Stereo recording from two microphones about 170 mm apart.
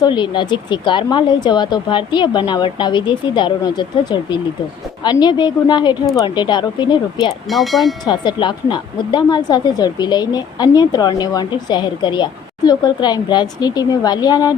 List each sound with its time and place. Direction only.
0.0 s speech: 25° left (ahead or behind)
7.4 s speech: centre (ahead or behind)
8.0 s speech: 25° left (ahead or behind)